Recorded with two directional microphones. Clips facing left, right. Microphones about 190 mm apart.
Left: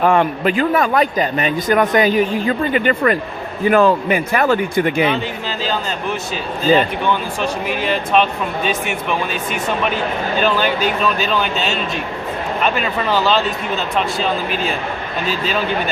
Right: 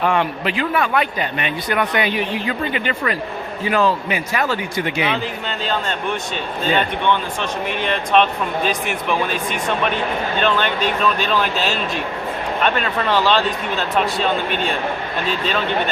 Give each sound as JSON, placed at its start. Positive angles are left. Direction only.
{"t": 0.0, "sound": "a man's voice", "side_deg": 45}
{"t": 6.7, "sound": "speech", "side_deg": 5}